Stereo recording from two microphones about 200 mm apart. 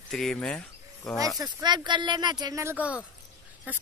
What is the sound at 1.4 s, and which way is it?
Speech, 20° right (ahead or behind).